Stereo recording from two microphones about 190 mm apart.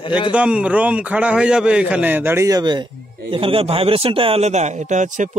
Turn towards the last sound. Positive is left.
turn(degrees=-40)  # may be behind; listen again after turning